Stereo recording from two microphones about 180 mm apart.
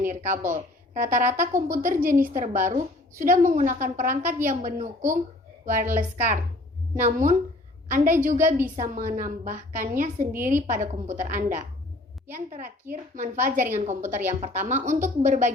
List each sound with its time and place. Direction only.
0.0 s a woman's voice: 45° right (ahead or behind)